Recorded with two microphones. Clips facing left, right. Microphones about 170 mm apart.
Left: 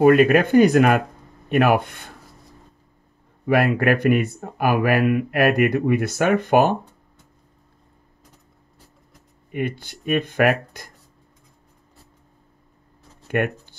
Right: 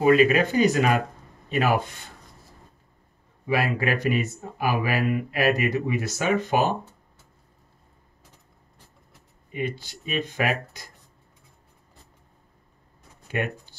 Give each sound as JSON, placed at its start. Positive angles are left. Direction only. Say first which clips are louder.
{"t": 0.0, "sound": "speech", "louder": "left 4 dB", "side_deg": 55}
{"t": 3.4, "sound": "speech", "louder": "left 6 dB", "side_deg": 55}
{"t": 9.5, "sound": "speech", "louder": "left 4 dB", "side_deg": 55}
{"t": 13.3, "sound": "speech", "louder": "left 6 dB", "side_deg": 55}